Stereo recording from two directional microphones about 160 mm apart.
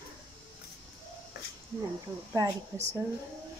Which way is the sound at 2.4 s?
20° right (ahead or behind).